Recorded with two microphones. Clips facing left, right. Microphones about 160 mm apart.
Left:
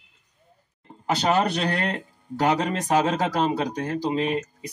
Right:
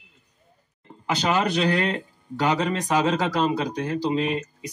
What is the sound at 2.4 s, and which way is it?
Speech, 40° left (ahead or behind).